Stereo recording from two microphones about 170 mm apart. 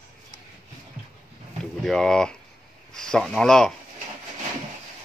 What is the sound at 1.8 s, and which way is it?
Speech, 5° left (ahead or behind).